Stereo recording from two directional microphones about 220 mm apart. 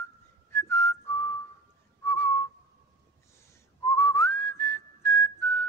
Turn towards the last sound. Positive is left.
turn(degrees=10)  # may be behind; listen again after turning